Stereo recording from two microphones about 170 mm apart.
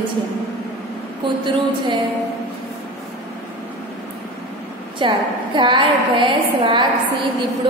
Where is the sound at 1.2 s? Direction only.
30° right (ahead or behind).